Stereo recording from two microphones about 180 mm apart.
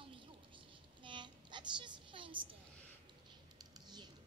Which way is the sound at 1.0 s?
25° right (ahead or behind).